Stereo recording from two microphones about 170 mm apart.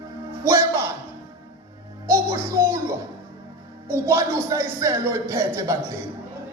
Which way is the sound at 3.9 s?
15° right (ahead or behind).